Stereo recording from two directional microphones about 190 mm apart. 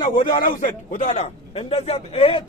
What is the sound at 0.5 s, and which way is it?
A man's voice, 45° left (ahead or behind).